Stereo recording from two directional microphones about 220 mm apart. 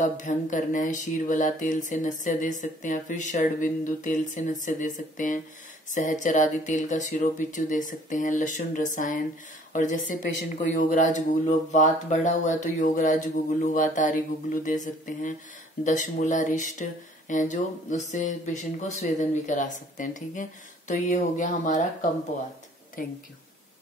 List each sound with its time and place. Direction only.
0.0 s speech: 35° left (ahead or behind)